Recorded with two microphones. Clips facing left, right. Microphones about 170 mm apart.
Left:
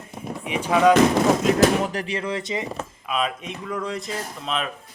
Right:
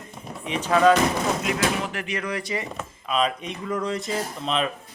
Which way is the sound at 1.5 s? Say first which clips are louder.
Left 7 dB; 40° left (ahead or behind).